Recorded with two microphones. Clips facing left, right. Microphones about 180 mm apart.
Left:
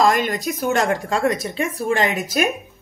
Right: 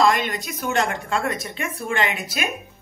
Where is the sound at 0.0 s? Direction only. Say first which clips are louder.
Left 2 dB; 40° left (ahead or behind).